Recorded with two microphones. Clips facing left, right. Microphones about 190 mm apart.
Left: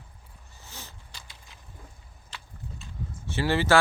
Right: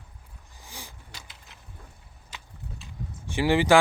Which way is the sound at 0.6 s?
15° right (ahead or behind).